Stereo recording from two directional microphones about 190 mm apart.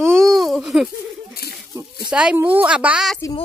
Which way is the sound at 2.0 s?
5° right (ahead or behind).